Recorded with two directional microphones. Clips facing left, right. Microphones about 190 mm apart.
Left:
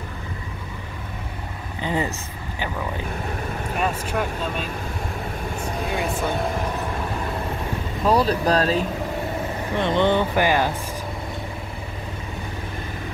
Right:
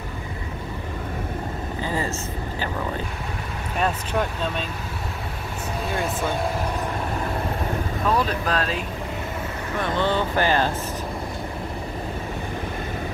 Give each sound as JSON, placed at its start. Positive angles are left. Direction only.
{"t": 1.8, "sound": "vehicle", "side_deg": 20}
{"t": 3.7, "sound": "speech", "side_deg": 5}
{"t": 8.1, "sound": "speech", "side_deg": 35}
{"t": 9.8, "sound": "speech", "side_deg": 20}